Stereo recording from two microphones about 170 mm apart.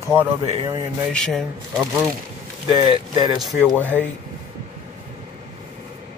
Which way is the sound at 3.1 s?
25° right (ahead or behind).